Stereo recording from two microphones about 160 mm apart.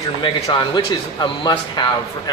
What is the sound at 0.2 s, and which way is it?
A man's voice, 30° left (ahead or behind).